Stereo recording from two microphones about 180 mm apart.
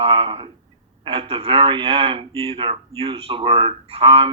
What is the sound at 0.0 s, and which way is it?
Speech, 30° right (ahead or behind).